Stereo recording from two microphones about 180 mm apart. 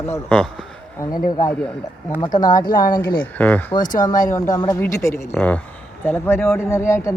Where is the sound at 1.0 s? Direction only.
20° left (ahead or behind).